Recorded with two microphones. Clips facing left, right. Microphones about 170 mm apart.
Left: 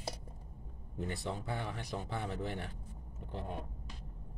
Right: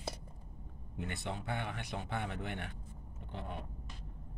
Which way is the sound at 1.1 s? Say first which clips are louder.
Even; 35° left (ahead or behind).